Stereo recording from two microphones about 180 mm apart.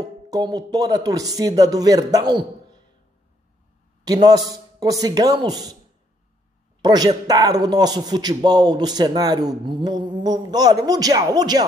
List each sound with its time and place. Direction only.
0.0 s speech: 25° right (ahead or behind)
4.0 s a man's voice: 20° right (ahead or behind)
6.8 s a man's voice: 20° right (ahead or behind)